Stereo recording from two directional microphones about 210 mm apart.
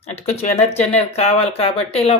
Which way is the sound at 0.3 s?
30° left (ahead or behind).